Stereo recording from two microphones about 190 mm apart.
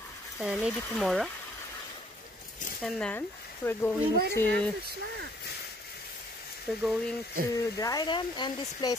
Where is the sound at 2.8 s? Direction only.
5° left (ahead or behind).